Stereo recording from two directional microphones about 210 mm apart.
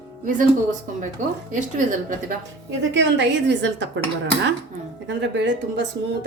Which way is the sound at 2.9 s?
55° right (ahead or behind).